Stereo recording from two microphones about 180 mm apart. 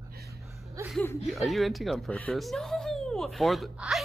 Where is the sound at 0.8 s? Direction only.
15° right (ahead or behind).